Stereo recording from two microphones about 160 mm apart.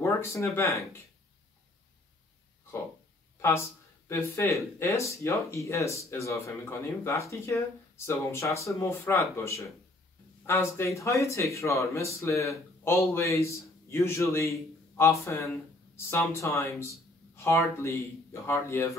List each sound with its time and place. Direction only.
0.0 s speech: 15° left (ahead or behind)
3.3 s speech: 15° left (ahead or behind)